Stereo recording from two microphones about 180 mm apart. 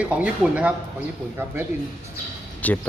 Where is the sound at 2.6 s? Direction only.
10° left (ahead or behind).